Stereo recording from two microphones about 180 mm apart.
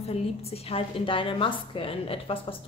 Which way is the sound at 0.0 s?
35° left (ahead or behind).